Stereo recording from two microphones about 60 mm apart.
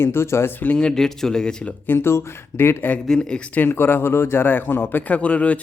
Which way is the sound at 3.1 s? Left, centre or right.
Centre.